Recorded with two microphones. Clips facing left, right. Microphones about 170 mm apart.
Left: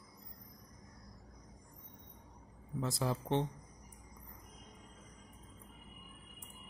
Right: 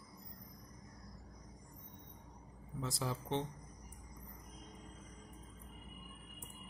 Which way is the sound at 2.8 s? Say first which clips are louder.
Left 4 dB; 55° left (ahead or behind).